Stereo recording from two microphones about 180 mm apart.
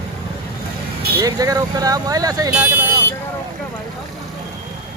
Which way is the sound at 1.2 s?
20° right (ahead or behind).